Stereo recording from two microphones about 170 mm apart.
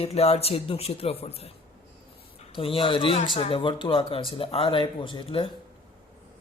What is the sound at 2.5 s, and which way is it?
Speech, 30° left (ahead or behind).